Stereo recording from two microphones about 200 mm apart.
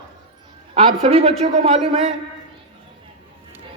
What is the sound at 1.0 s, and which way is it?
Speech, 30° right (ahead or behind).